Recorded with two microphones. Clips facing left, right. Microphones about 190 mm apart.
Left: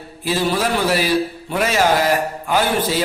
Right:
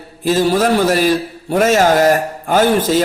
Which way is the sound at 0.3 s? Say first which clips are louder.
Right 6 dB; 45° right (ahead or behind).